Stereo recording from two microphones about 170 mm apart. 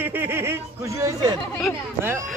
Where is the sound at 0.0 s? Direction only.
15° right (ahead or behind).